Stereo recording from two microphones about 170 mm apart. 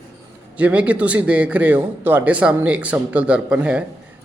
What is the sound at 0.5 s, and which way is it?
A man's voice, 10° right (ahead or behind).